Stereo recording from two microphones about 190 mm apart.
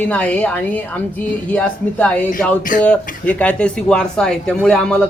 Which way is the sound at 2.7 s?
45° left (ahead or behind).